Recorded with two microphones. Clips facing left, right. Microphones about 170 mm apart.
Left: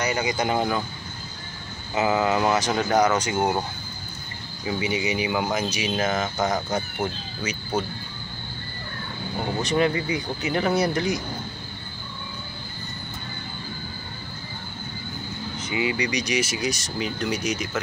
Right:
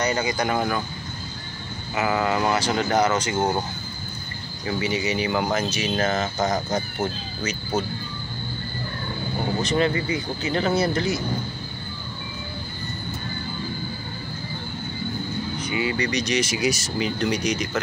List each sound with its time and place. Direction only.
0.0 s speech: 15° left (ahead or behind)
2.0 s speech: 20° left (ahead or behind)
4.6 s speech: 10° left (ahead or behind)
9.6 s speech: 15° left (ahead or behind)
15.6 s speech: 20° left (ahead or behind)
16.5 s speech: 5° right (ahead or behind)